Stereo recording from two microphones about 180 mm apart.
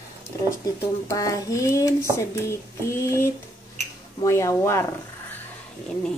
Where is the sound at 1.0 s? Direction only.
20° left (ahead or behind).